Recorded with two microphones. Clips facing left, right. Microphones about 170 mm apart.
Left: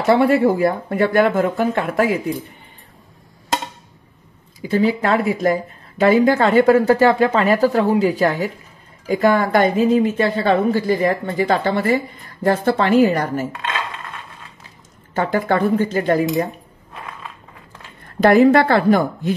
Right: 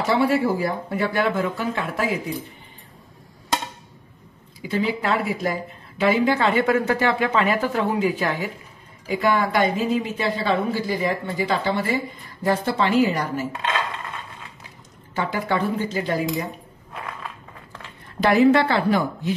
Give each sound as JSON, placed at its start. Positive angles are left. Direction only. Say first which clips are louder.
{"t": 0.0, "sound": "a woman's voice", "louder": "left 6 dB", "side_deg": 55}
{"t": 4.6, "sound": "a woman's voice", "louder": "left 6 dB", "side_deg": 45}
{"t": 15.1, "sound": "a woman's voice", "louder": "left 6 dB", "side_deg": 50}
{"t": 18.2, "sound": "a woman's voice", "louder": "left 4 dB", "side_deg": 50}